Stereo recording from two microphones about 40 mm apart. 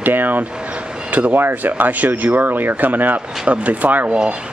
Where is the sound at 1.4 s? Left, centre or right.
Right.